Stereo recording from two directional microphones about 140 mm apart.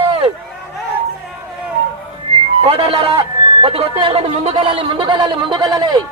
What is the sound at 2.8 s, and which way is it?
A man's voice, 45° right (ahead or behind).